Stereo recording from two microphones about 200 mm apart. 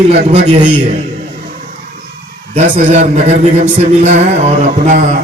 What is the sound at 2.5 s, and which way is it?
A man's voice, 35° right (ahead or behind).